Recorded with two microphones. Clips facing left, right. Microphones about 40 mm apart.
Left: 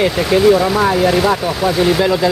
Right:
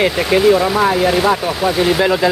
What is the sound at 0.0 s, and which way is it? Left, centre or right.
Speech, centre.